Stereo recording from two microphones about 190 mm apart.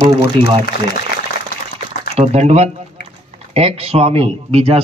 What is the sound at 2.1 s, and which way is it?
A man's voice, 35° right (ahead or behind).